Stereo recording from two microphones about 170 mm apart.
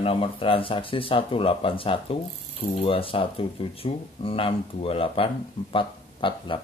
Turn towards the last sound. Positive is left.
turn(degrees=30)  # may be behind; listen again after turning